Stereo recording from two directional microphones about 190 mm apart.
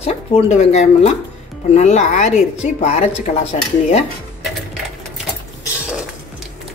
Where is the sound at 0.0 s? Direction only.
35° left (ahead or behind).